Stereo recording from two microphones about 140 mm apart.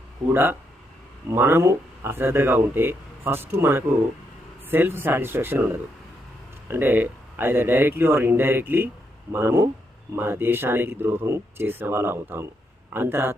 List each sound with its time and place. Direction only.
0.3 s speech: 15° right (ahead or behind)